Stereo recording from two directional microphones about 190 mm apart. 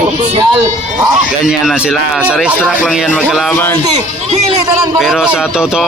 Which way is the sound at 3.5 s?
10° left (ahead or behind).